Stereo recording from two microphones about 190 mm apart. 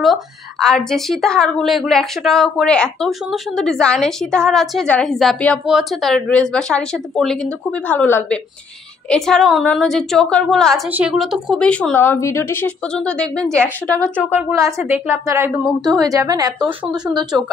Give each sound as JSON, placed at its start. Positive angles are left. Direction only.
{"t": 0.0, "sound": "a woman's voice", "side_deg": 0}
{"t": 14.3, "sound": "a woman's voice", "side_deg": -15}